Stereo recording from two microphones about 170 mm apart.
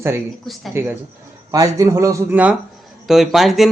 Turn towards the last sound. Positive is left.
turn(degrees=0)  # may be behind; listen again after turning